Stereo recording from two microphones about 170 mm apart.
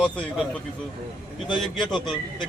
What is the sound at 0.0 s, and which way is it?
Speech, 5° left (ahead or behind).